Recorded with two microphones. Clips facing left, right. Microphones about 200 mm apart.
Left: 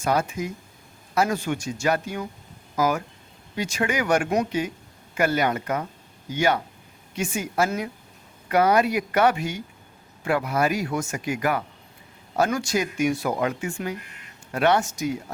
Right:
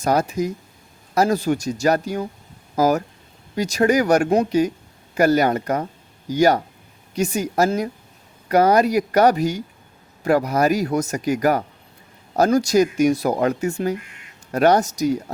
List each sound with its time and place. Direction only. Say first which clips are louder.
0.0 s speech: right 5 dB; 40° right (ahead or behind)